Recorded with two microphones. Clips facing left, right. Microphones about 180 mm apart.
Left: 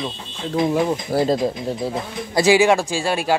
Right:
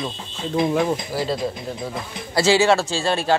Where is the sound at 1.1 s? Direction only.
55° left (ahead or behind).